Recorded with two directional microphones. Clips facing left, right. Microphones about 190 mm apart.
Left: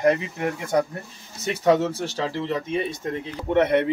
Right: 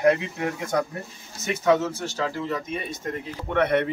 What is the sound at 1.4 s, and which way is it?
Speech, 35° left (ahead or behind).